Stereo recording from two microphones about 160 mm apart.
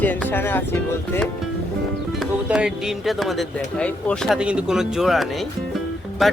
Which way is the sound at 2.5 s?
5° right (ahead or behind).